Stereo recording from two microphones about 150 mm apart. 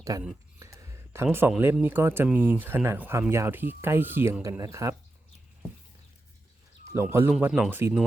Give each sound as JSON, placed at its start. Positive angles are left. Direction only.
{"t": 0.1, "sound": "speech", "side_deg": -25}
{"t": 0.6, "sound": "a sound", "side_deg": -20}
{"t": 1.8, "sound": "speech", "side_deg": -15}
{"t": 6.9, "sound": "speech", "side_deg": -15}